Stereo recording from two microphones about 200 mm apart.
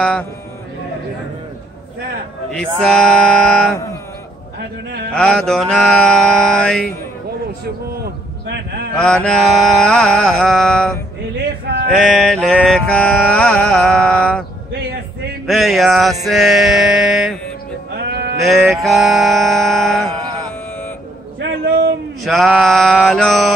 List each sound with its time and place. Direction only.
0.0 s mantra: 5° left (ahead or behind)
2.5 s mantra: 5° left (ahead or behind)
4.6 s a man's voice: 55° right (ahead or behind)
5.1 s mantra: 5° left (ahead or behind)
7.9 s a sound: 55° right (ahead or behind)
8.9 s mantra: 5° left (ahead or behind)
11.3 s a sound: 55° right (ahead or behind)
12.0 s mantra: centre (ahead or behind)
15.4 s mantra: centre (ahead or behind)
17.9 s music: 55° right (ahead or behind)
18.4 s mantra: centre (ahead or behind)
21.4 s a sound: 60° right (ahead or behind)
22.2 s mantra: centre (ahead or behind)